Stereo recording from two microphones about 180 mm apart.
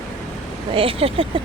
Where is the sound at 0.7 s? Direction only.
30° right (ahead or behind).